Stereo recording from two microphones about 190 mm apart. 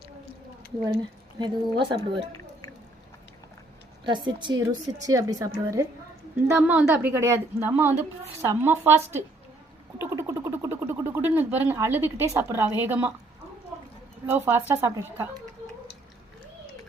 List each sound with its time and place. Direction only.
1.4 s speech: 25° right (ahead or behind)
4.0 s speech: 25° right (ahead or behind); by 13.1 s 10° right (ahead or behind)
14.3 s speech: 10° right (ahead or behind)